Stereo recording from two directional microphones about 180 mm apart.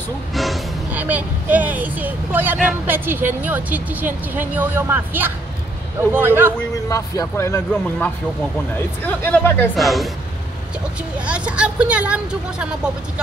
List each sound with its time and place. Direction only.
0.3 s speech: centre (ahead or behind)
6.9 s speech: 20° left (ahead or behind); by 10.0 s centre (ahead or behind)
11.1 s speech: 5° right (ahead or behind)